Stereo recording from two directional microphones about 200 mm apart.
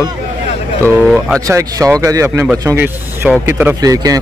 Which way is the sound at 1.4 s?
15° right (ahead or behind).